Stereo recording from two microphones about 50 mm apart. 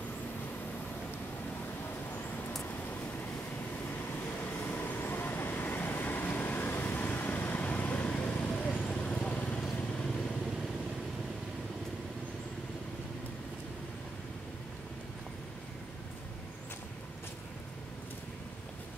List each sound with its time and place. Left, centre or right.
4.6 s vehicle: left